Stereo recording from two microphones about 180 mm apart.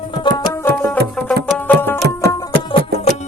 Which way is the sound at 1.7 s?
10° left (ahead or behind).